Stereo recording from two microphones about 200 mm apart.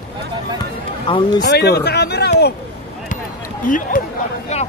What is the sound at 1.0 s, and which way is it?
Speech, 25° left (ahead or behind).